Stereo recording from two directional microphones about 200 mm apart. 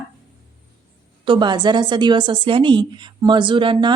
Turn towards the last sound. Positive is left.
turn(degrees=-25)  # may be behind; listen again after turning